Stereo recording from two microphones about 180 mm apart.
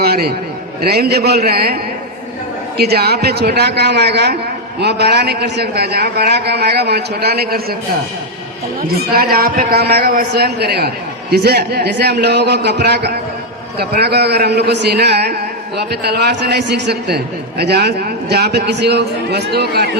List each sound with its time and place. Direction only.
0.0 s a man's voice: 60° right (ahead or behind)
9.1 s a man's voice: 55° right (ahead or behind)